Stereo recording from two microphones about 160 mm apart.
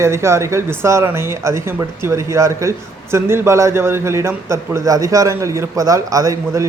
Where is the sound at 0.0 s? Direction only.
15° right (ahead or behind).